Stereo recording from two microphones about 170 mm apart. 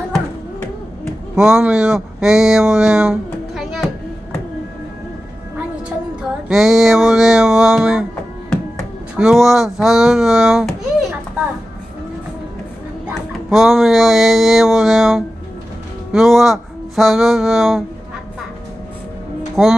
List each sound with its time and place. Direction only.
1.3 s speech: 5° right (ahead or behind)
6.5 s music: centre (ahead or behind)
9.1 s speech: 5° right (ahead or behind)
13.5 s speech: centre (ahead or behind)
19.6 s speech: centre (ahead or behind)